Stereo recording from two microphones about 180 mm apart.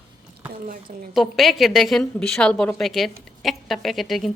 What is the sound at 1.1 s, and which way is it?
A woman's voice, centre (ahead or behind).